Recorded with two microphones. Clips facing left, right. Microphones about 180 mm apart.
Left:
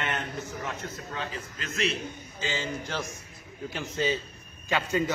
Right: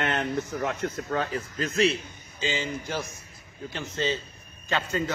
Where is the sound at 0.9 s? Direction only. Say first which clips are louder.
Right 7 dB; 45° right (ahead or behind).